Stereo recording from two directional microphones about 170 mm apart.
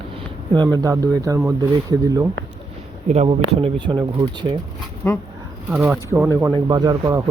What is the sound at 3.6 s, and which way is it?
Speech, 30° right (ahead or behind).